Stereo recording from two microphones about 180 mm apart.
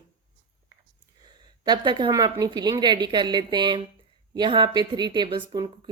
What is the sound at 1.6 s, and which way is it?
Speech, 25° right (ahead or behind).